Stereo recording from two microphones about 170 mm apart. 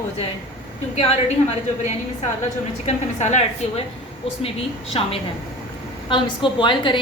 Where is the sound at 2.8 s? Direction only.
40° left (ahead or behind).